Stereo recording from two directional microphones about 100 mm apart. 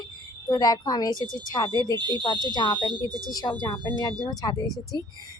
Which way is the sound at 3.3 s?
40° left (ahead or behind).